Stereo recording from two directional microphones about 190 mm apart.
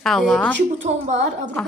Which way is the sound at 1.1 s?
40° right (ahead or behind).